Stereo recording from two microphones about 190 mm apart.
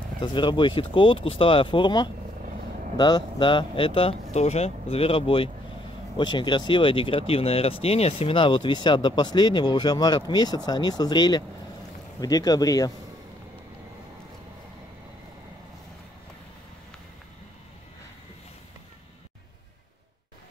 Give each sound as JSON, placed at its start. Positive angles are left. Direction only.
{"t": 0.2, "sound": "speech", "side_deg": 25}